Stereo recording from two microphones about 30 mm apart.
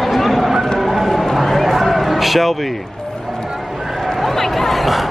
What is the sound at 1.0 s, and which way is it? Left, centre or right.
Run, centre.